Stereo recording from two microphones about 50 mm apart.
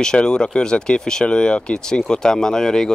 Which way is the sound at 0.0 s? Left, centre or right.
Centre.